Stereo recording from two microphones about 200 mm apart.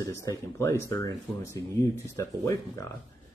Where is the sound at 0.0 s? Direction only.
15° left (ahead or behind).